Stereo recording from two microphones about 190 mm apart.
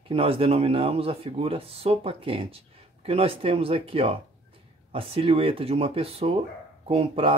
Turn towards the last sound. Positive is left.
turn(degrees=-30)  # may be behind; listen again after turning